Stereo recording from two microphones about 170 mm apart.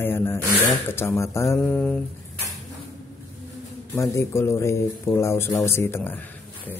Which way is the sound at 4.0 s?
15° left (ahead or behind).